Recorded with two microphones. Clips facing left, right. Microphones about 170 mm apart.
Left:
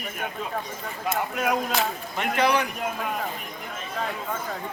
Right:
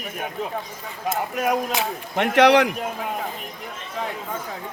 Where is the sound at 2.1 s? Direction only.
75° right (ahead or behind); by 2.6 s 90° right.